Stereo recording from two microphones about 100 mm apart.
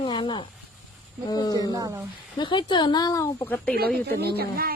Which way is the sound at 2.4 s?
55° left (ahead or behind).